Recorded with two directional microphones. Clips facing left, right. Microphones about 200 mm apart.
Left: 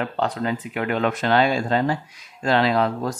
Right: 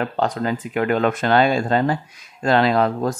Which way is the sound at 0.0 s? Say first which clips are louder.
Right 2 dB; 45° right (ahead or behind).